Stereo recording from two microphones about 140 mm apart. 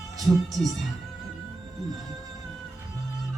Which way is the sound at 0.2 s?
Centre (ahead or behind).